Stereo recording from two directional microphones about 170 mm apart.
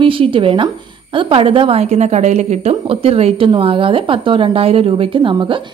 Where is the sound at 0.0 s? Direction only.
30° right (ahead or behind).